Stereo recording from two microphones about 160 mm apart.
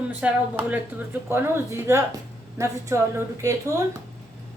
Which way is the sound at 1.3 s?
15° right (ahead or behind).